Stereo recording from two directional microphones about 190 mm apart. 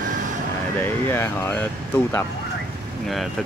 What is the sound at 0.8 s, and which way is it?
Speech, 10° left (ahead or behind).